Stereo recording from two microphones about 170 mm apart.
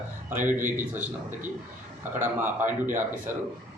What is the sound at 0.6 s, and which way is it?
Speech, 50° right (ahead or behind).